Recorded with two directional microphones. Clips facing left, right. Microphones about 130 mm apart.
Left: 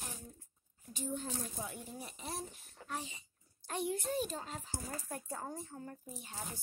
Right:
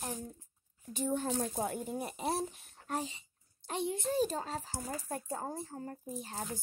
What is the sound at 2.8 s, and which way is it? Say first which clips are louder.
Speech: right 6 dB; 45° right (ahead or behind).